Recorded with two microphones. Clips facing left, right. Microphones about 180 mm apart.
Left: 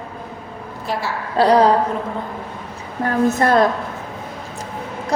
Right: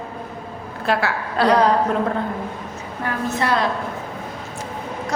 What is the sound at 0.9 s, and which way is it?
Speech, 65° right (ahead or behind).